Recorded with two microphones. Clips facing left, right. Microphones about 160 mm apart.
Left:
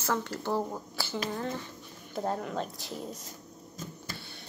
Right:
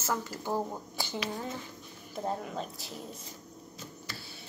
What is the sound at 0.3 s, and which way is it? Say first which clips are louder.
Speech: left 2 dB; 10° right (ahead or behind).